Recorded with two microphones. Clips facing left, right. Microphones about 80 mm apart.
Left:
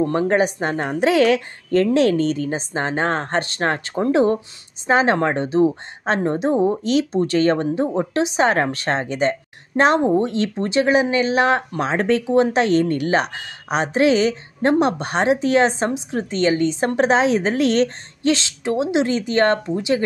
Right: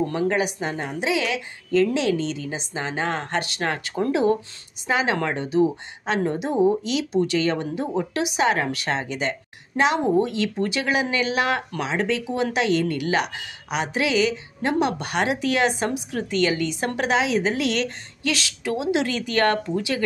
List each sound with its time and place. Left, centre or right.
0.0 s a woman's voice: left
11.9 s a woman's voice: left